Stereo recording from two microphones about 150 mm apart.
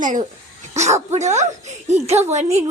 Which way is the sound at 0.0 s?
60° right (ahead or behind).